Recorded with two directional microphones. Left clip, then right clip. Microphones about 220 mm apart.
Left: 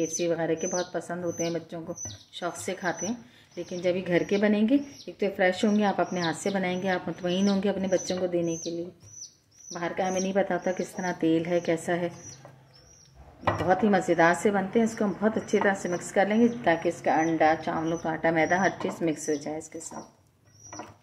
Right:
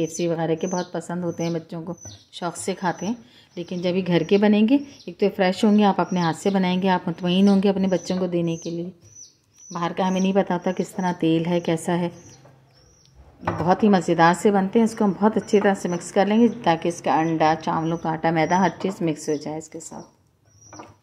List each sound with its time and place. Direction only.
0.0 s a woman's voice: 40° right (ahead or behind)
8.3 s speech: 55° right (ahead or behind)
9.8 s a woman's voice: 45° right (ahead or behind)
13.4 s a woman's voice: 35° right (ahead or behind)